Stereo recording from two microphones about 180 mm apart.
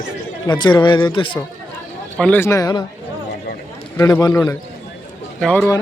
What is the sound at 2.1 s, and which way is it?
Speech, 10° left (ahead or behind).